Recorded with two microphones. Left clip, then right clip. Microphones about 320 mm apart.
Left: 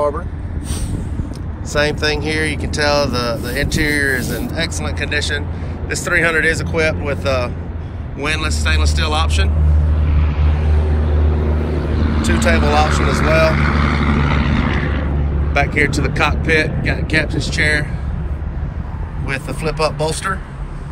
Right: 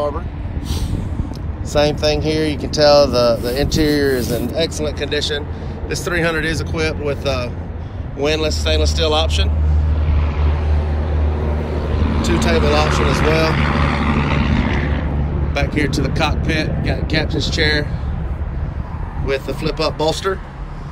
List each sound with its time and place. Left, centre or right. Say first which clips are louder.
1.7 s speech: right 1 dB; centre
10.0 s vehicle: right 2 dB; right
12.2 s speech: left 1 dB; centre
12.8 s speech: even; right
13.5 s vehicle: left 1 dB; right
15.5 s speech: left 4 dB; centre
19.2 s speech: right 1 dB; centre